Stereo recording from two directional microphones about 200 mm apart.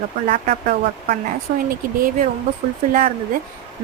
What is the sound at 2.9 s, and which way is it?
Speech, 45° right (ahead or behind).